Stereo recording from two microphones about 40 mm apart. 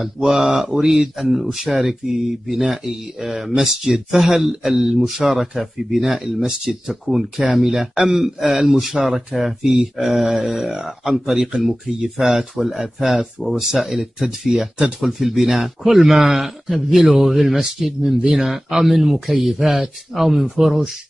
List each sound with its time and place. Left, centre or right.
0.2 s speech: centre
7.9 s speech: centre
8.2 s speech: centre